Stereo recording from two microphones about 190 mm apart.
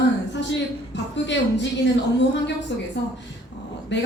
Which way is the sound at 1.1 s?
70° left (ahead or behind).